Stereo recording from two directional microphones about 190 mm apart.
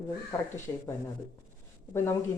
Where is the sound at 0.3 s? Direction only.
15° left (ahead or behind).